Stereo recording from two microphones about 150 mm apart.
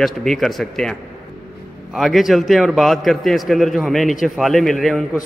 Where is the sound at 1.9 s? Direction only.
Centre (ahead or behind).